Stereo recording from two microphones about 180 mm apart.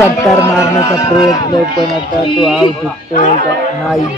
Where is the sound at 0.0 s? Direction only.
15° left (ahead or behind).